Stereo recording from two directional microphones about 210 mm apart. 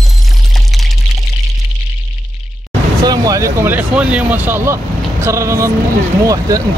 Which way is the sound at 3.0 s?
15° right (ahead or behind).